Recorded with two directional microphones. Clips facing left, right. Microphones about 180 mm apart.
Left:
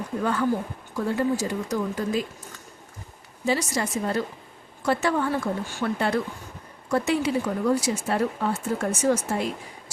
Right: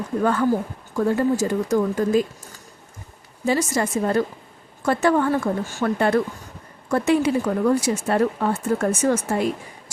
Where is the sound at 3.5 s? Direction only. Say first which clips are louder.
Right 4 dB; 50° right (ahead or behind).